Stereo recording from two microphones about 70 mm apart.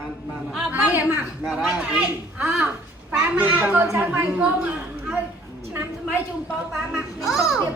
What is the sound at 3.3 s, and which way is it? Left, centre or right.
Speech, right.